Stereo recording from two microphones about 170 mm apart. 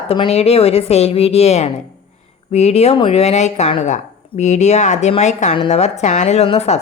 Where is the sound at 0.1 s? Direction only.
35° left (ahead or behind).